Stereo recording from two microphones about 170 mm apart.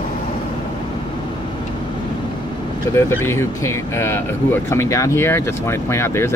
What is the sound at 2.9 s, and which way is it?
Speech, 15° left (ahead or behind).